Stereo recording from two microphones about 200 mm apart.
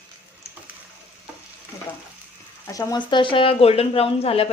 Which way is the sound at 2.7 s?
15° left (ahead or behind).